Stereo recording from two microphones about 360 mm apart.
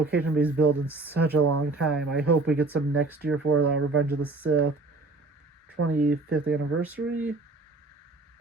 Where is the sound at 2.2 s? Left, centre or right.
Right.